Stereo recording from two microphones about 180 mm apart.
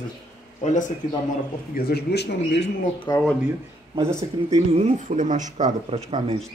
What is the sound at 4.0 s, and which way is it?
Speech, 15° right (ahead or behind).